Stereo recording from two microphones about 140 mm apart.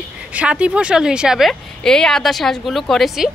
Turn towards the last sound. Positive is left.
turn(degrees=0)  # may be behind; listen again after turning